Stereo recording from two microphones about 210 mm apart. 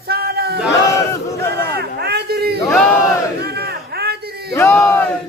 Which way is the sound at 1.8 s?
50° right (ahead or behind).